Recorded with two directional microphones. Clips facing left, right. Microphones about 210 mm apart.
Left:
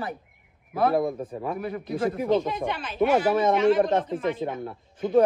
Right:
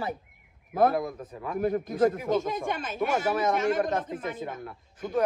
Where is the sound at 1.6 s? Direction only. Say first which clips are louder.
Right 6 dB; 45° right (ahead or behind).